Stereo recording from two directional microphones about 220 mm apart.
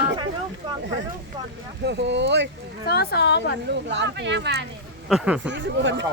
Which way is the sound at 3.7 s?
50° right (ahead or behind).